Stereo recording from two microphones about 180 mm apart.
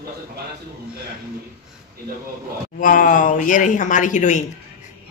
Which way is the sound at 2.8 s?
50° left (ahead or behind).